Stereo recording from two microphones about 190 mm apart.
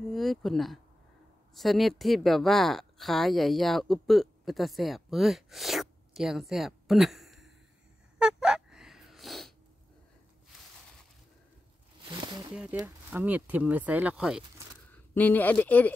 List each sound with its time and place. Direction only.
0.1 s speech: centre (ahead or behind)
8.2 s fowl: 5° right (ahead or behind)
12.0 s a sound: 25° right (ahead or behind)
12.8 s speech: 10° right (ahead or behind)
14.9 s speech: 10° left (ahead or behind)